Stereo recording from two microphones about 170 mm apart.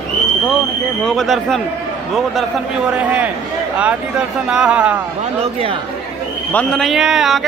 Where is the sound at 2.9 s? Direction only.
10° right (ahead or behind).